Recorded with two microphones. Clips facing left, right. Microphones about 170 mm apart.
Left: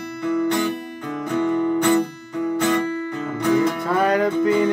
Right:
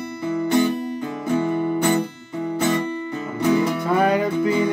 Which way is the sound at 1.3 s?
10° right (ahead or behind).